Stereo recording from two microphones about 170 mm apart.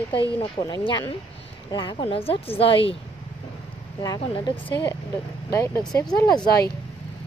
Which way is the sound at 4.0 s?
25° left (ahead or behind).